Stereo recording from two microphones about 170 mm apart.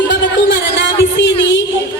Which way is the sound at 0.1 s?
90° left.